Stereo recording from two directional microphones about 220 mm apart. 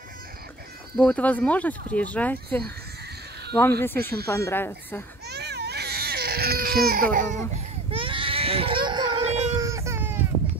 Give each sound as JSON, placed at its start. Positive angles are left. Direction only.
{"t": 0.9, "sound": "speech", "side_deg": 5}
{"t": 3.8, "sound": "speech", "side_deg": 10}
{"t": 5.3, "sound": "baby cry", "side_deg": -50}
{"t": 9.6, "sound": "baby cry", "side_deg": -15}